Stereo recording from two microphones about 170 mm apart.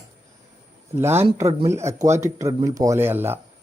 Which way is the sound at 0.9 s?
15° right (ahead or behind).